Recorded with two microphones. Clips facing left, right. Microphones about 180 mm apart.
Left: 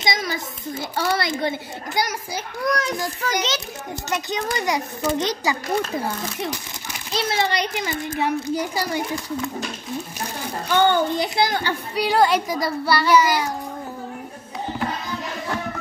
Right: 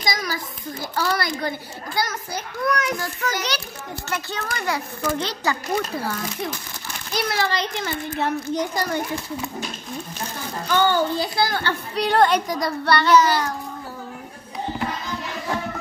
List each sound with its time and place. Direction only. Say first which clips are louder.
0.0 s a sound: left 2 dB; 25° left (ahead or behind)
2.0 s a child's voice: left 1 dB; 15° left (ahead or behind)
2.6 s a child's voice: even; 35° left (ahead or behind)
3.3 s a child's voice: left 2 dB; 20° left (ahead or behind)
7.1 s a child's voice: left 1 dB; 25° left (ahead or behind); by 9.0 s 10° left (ahead or behind)
10.8 s a child's voice: left 2 dB; 20° left (ahead or behind)
11.9 s a child's voice: even; 5° left (ahead or behind)